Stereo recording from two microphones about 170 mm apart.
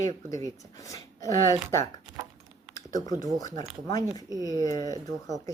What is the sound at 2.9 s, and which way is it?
Speech, 20° left (ahead or behind).